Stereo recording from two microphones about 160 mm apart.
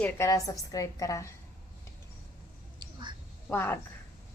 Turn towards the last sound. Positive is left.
turn(degrees=15)  # may be behind; listen again after turning